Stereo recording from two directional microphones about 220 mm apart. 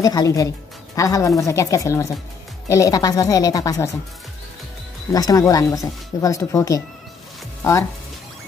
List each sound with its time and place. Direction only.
0.0 s speech: 15° left (ahead or behind)
5.1 s speech: 15° left (ahead or behind)